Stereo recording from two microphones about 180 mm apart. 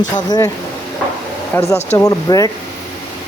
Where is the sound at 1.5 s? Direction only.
10° left (ahead or behind).